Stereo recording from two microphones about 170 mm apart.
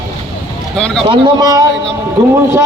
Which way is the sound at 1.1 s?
25° right (ahead or behind).